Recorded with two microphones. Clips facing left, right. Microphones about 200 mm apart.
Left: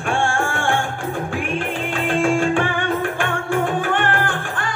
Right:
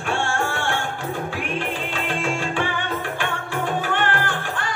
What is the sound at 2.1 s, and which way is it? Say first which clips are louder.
Music: left 9 dB; 50° left (ahead or behind).